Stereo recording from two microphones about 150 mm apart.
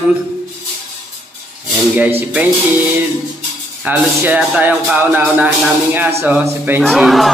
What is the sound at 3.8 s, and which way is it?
A man's voice, 15° right (ahead or behind).